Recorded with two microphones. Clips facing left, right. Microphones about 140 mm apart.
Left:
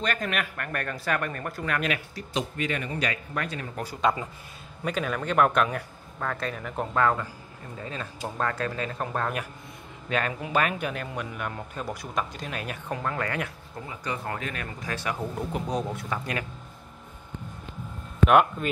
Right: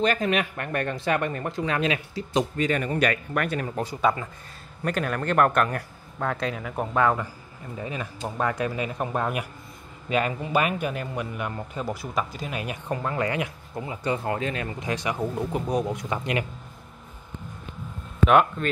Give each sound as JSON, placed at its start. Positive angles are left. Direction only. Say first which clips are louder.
{"t": 0.0, "sound": "speech", "louder": "right 6 dB", "side_deg": -30}
{"t": 3.0, "sound": "speech", "louder": "right 6 dB", "side_deg": -60}
{"t": 4.8, "sound": "speech", "louder": "right 2 dB", "side_deg": 0}
{"t": 13.2, "sound": "speech", "louder": "right 4 dB", "side_deg": -10}
{"t": 13.8, "sound": "speech", "louder": "right 6 dB", "side_deg": -25}
{"t": 18.2, "sound": "speech", "louder": "right 1 dB", "side_deg": 5}